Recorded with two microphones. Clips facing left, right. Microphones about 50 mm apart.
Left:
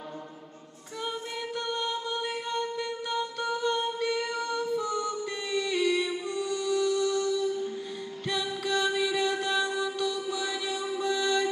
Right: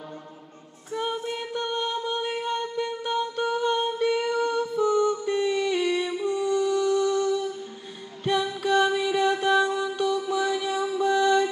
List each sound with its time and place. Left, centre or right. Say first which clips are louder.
0.9 s music: right 6 dB; right
2.2 s a sound: right 4 dB; centre
2.8 s humming: right 4 dB; centre
4.0 s music: right 6 dB; centre